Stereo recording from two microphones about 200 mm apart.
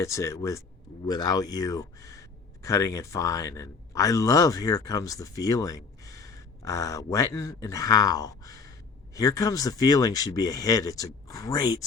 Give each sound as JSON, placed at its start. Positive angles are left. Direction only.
{"t": 0.0, "sound": "speech", "side_deg": 15}